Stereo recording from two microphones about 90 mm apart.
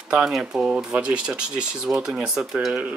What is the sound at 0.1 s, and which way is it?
Speech, 5° right (ahead or behind).